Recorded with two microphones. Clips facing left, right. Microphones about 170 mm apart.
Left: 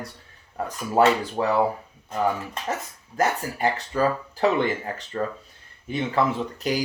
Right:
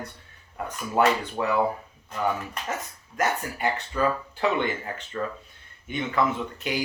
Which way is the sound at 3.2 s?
35° left (ahead or behind).